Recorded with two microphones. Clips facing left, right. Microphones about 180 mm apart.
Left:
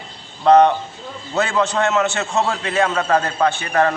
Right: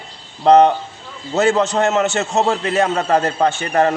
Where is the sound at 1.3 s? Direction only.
40° right (ahead or behind).